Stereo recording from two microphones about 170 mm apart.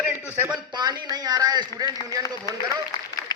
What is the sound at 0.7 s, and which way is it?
Speech, 25° right (ahead or behind).